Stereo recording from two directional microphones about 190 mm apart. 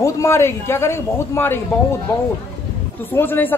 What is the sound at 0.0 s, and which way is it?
Speech, 15° left (ahead or behind).